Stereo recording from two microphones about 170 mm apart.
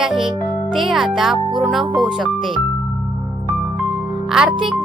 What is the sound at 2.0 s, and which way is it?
Speech, centre (ahead or behind).